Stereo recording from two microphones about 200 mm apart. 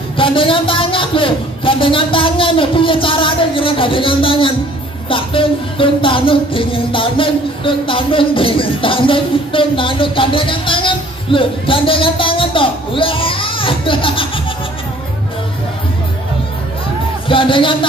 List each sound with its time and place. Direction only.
0.2 s music: 25° left (ahead or behind)
17.3 s music: 25° left (ahead or behind)